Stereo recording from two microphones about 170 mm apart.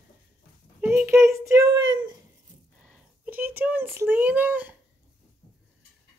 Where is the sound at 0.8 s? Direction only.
10° right (ahead or behind).